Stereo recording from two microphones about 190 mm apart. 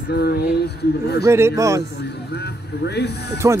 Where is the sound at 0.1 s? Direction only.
60° left (ahead or behind).